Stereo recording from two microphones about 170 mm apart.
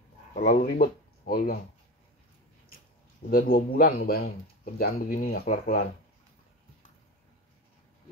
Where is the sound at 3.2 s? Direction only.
60° left (ahead or behind).